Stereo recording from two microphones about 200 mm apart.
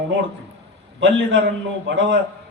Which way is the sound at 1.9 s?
70° right (ahead or behind).